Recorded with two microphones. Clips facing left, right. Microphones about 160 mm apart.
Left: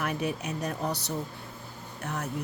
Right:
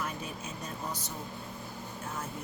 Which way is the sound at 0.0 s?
70° left (ahead or behind).